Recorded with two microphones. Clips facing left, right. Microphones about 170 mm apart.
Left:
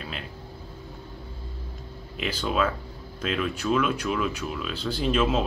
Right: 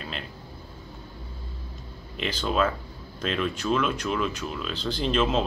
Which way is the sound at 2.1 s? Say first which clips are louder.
Right 1 dB; 5° left (ahead or behind).